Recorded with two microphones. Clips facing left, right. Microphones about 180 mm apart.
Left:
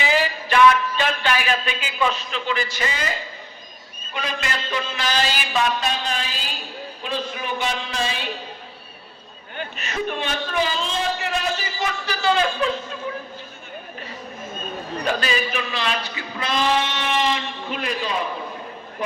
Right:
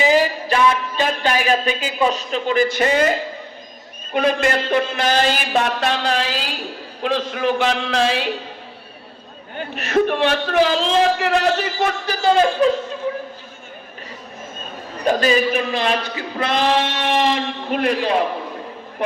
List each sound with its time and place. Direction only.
0.0 s music: 40° right (ahead or behind); by 3.2 s 55° right (ahead or behind)
4.1 s a man's voice: 55° right (ahead or behind); by 8.3 s 85° right
9.7 s a man's voice: 65° right (ahead or behind); by 12.7 s 40° right (ahead or behind)
15.0 s a man's voice: 40° right (ahead or behind); by 18.3 s 60° right (ahead or behind)